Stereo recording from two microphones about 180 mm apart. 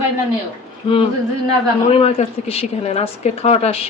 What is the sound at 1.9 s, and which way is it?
A woman's voice, 35° left (ahead or behind).